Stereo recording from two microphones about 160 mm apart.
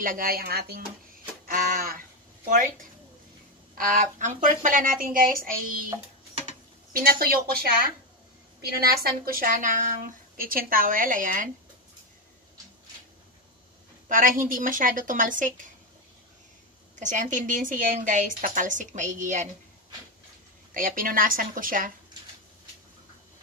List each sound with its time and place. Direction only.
0.0 s speech: 60° right (ahead or behind)
1.4 s a sound: 65° right (ahead or behind)
2.4 s speech: 55° right (ahead or behind)
3.7 s a woman's voice: 55° right (ahead or behind)
6.9 s speech: 65° right (ahead or behind)
8.7 s a woman's voice: 70° right (ahead or behind); by 11.5 s 55° right (ahead or behind)
14.0 s a woman's voice: 55° right (ahead or behind)
17.0 s a woman's voice: 50° right (ahead or behind)
20.7 s a woman's voice: 60° right (ahead or behind)